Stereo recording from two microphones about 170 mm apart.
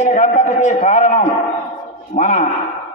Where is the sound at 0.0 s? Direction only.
45° left (ahead or behind).